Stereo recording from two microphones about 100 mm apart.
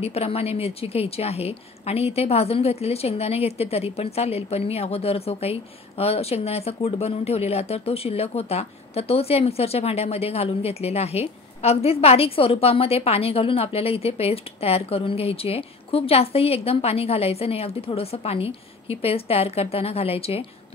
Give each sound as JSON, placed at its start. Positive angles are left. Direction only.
{"t": 0.0, "sound": "a woman's voice", "side_deg": 90}